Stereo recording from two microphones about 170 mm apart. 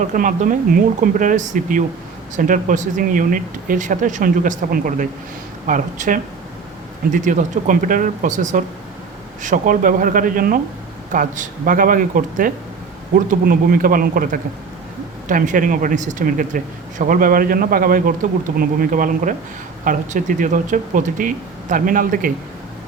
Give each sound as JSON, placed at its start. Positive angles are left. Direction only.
{"t": 0.0, "sound": "speech", "side_deg": -50}